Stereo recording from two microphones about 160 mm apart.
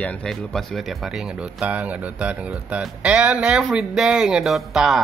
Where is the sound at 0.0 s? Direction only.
5° left (ahead or behind).